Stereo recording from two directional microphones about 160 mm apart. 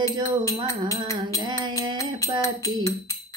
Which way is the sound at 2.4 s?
20° left (ahead or behind).